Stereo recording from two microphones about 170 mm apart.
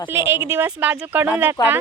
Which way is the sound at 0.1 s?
15° right (ahead or behind).